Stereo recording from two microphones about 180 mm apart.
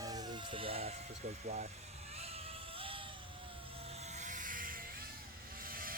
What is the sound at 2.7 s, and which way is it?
Vehicle, 30° right (ahead or behind).